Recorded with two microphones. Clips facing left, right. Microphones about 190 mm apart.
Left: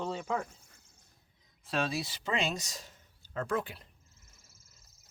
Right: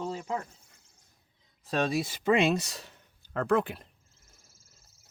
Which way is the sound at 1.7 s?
50° right (ahead or behind).